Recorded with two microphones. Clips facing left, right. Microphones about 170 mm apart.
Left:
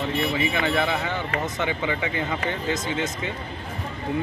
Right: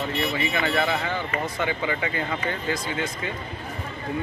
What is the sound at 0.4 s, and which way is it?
Speech, 15° left (ahead or behind).